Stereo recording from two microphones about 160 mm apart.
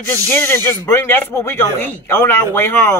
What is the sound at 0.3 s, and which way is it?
Speech, 15° left (ahead or behind).